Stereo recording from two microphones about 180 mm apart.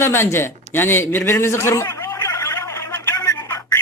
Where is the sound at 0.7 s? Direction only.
10° left (ahead or behind).